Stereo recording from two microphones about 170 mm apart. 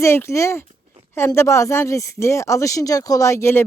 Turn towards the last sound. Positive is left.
turn(degrees=15)  # may be behind; listen again after turning